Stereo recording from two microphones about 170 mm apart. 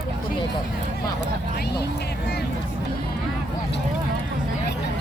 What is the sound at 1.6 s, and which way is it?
Music, 75° left (ahead or behind).